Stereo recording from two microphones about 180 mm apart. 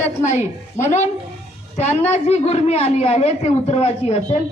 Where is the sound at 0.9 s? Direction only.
40° left (ahead or behind).